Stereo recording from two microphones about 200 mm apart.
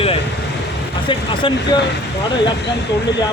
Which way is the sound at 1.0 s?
25° left (ahead or behind).